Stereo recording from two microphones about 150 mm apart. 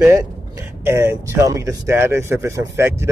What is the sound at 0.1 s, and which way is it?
Speech, 20° right (ahead or behind).